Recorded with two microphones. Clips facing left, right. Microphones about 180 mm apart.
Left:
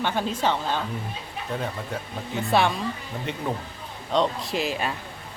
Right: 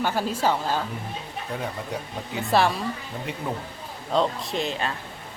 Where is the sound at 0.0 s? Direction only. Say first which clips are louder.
Right 1 dB; 5° right (ahead or behind).